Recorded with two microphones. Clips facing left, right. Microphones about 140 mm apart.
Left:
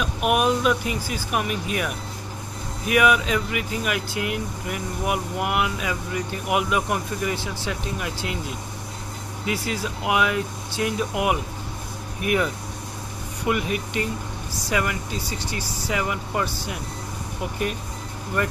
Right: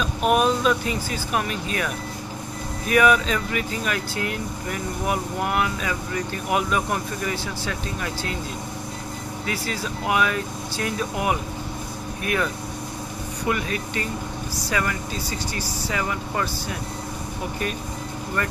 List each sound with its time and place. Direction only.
0.0 s speech: 10° left (ahead or behind)
2.9 s speech: 10° left (ahead or behind)
9.5 s speech: 15° left (ahead or behind)
13.5 s speech: 15° left (ahead or behind)